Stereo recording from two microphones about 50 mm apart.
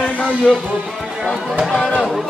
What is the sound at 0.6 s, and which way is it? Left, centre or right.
Music, centre.